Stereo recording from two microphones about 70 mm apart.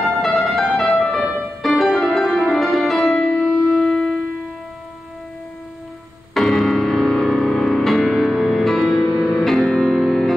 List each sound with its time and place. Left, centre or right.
0.0 s music: centre
6.3 s music: centre